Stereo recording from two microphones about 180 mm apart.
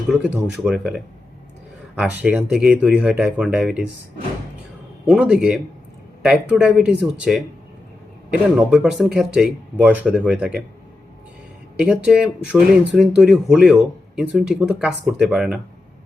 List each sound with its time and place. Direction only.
0.1 s speech: 5° right (ahead or behind)
5.0 s speech: 5° right (ahead or behind)
11.8 s speech: 5° right (ahead or behind)